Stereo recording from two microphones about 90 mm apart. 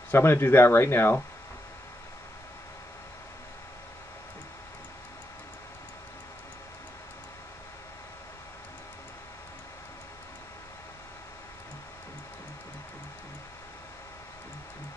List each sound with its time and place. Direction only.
0.1 s speech: 25° left (ahead or behind)